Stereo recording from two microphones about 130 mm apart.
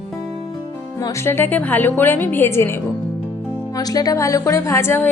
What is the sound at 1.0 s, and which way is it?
A woman's voice, 20° left (ahead or behind).